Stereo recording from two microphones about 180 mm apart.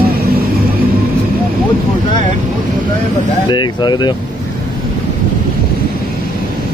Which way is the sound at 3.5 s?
25° left (ahead or behind).